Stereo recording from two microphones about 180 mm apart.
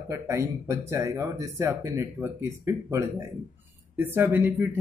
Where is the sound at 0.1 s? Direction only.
15° right (ahead or behind).